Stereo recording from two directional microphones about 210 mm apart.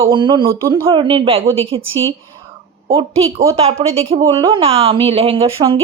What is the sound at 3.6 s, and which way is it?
A woman's voice, 30° right (ahead or behind).